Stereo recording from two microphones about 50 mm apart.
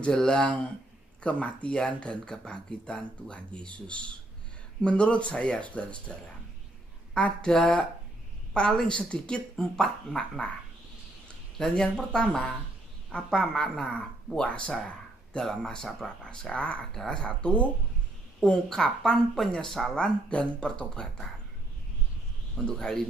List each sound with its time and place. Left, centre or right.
0.1 s speech: centre
1.2 s speech: left
7.2 s speech: left
7.5 s speech: centre
11.7 s speech: centre
16.5 s speech: left
16.9 s speech: centre
18.4 s speech: centre
22.7 s speech: centre